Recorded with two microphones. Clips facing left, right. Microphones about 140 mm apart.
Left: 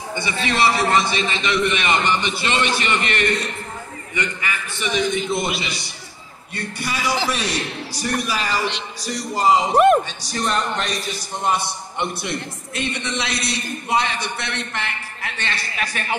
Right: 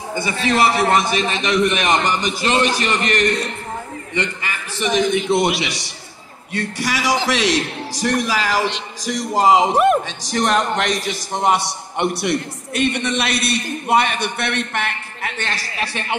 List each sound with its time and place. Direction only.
0.1 s a man's voice: 40° right (ahead or behind)
4.1 s a man's voice: 30° right (ahead or behind)
5.1 s a man's voice: 70° right (ahead or behind)
6.5 s a man's voice: 90° right; by 15.6 s 50° right (ahead or behind)
15.8 s a man's voice: 30° right (ahead or behind)